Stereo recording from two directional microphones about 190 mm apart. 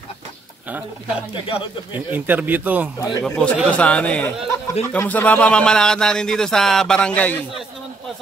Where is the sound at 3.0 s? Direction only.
15° left (ahead or behind).